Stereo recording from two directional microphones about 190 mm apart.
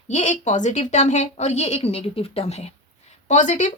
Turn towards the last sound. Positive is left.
turn(degrees=40)  # may be behind; listen again after turning